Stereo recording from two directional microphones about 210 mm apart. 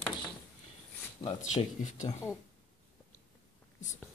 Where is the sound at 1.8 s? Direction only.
35° left (ahead or behind).